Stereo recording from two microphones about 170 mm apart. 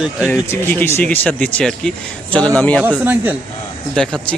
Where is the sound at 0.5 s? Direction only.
15° left (ahead or behind).